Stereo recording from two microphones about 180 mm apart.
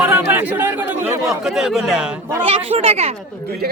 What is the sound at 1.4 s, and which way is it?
Speech, 5° right (ahead or behind).